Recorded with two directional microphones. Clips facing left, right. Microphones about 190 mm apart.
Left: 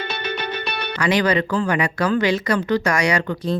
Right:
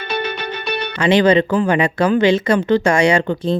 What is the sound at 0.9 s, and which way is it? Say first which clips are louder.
Speech: right 6 dB; 25° right (ahead or behind).